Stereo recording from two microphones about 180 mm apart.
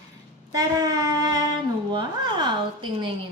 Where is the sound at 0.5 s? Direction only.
20° right (ahead or behind).